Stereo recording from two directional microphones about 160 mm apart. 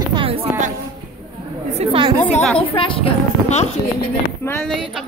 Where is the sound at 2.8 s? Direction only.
35° left (ahead or behind).